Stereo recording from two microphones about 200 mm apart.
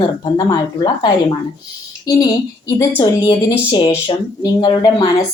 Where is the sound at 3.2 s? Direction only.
20° left (ahead or behind).